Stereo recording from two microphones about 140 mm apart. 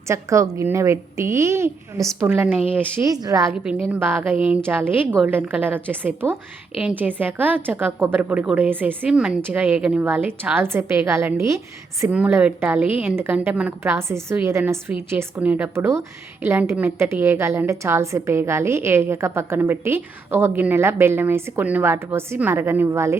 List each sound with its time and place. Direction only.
0.1 s a woman's voice: 20° right (ahead or behind)
3.5 s a woman's voice: 5° right (ahead or behind)